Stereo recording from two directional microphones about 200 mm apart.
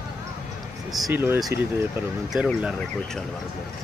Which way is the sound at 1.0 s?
10° right (ahead or behind).